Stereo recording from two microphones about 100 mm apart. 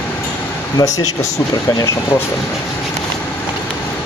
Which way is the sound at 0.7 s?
35° left (ahead or behind).